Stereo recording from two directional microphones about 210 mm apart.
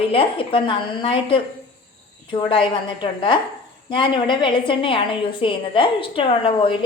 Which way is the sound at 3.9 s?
20° left (ahead or behind).